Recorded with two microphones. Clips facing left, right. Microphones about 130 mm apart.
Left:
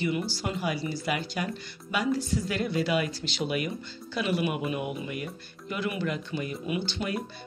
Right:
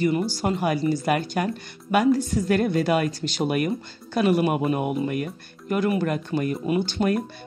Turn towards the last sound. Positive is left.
turn(degrees=-50)  # may be behind; listen again after turning